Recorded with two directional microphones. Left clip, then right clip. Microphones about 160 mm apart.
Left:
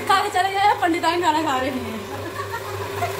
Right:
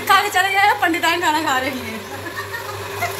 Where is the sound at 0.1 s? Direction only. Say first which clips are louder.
Right 4 dB; 15° right (ahead or behind).